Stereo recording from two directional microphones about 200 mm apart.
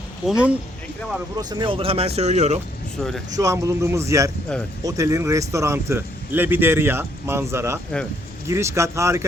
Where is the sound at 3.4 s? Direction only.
15° right (ahead or behind).